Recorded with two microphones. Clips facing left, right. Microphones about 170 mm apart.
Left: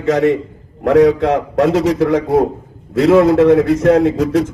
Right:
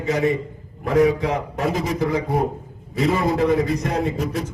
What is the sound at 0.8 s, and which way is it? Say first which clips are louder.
A man's voice: left 7 dB; 80° left.